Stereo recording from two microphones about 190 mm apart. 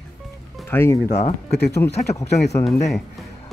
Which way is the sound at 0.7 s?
10° left (ahead or behind).